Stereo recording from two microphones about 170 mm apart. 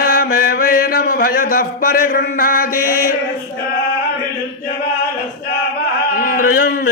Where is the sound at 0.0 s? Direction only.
60° left (ahead or behind).